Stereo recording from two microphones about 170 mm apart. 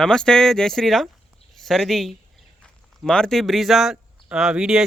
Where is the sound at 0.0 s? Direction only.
5° left (ahead or behind).